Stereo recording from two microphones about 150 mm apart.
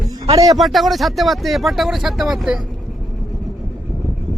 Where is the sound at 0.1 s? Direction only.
25° right (ahead or behind).